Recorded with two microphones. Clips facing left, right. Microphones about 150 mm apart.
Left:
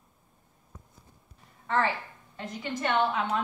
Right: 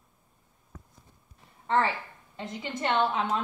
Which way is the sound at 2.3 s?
25° right (ahead or behind).